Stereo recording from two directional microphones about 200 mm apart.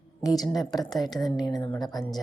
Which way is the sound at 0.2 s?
20° left (ahead or behind).